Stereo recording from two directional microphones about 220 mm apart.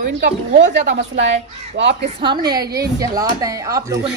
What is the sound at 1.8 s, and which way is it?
Speech, 50° right (ahead or behind).